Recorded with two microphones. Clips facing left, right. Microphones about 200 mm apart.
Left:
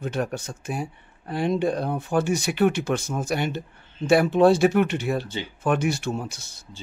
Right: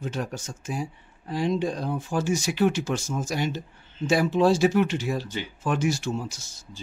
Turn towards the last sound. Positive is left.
turn(degrees=60)  # may be behind; listen again after turning